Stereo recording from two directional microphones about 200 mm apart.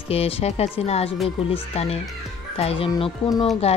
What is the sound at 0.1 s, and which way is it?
Speech, 30° left (ahead or behind).